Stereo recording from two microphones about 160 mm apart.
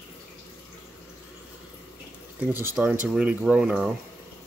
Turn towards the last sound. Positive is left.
turn(degrees=-5)  # may be behind; listen again after turning